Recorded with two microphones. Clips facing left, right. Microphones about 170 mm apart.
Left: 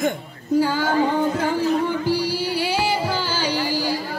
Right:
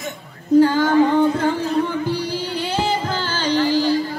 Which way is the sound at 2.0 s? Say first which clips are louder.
Left 1 dB; 10° left (ahead or behind).